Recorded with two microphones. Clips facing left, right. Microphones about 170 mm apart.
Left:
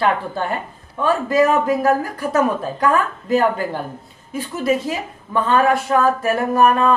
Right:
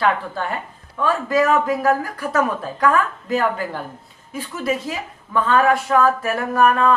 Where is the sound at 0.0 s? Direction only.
30° left (ahead or behind).